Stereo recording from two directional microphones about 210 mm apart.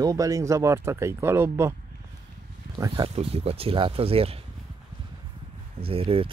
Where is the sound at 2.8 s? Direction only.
25° right (ahead or behind).